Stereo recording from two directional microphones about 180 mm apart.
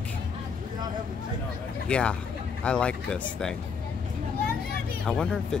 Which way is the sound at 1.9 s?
5° left (ahead or behind).